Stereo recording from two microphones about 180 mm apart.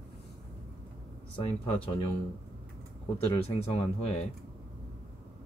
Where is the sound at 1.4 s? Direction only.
35° left (ahead or behind).